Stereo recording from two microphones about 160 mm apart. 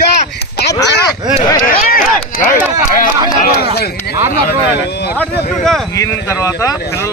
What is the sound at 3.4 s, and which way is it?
Speech, 75° left (ahead or behind).